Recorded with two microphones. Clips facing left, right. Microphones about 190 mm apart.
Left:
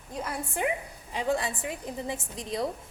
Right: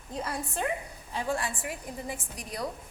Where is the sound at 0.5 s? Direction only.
15° left (ahead or behind).